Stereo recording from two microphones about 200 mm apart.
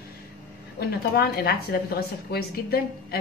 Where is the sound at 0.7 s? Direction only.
50° left (ahead or behind).